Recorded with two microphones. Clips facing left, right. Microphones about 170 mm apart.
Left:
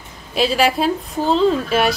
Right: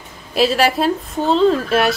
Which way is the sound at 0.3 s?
Centre (ahead or behind).